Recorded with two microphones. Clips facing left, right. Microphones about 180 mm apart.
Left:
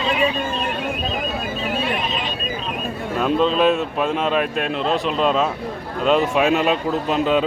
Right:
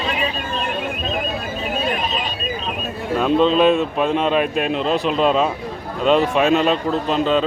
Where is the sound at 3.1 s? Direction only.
Centre (ahead or behind).